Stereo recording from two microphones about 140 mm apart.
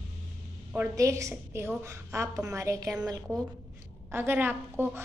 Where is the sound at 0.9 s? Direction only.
20° right (ahead or behind).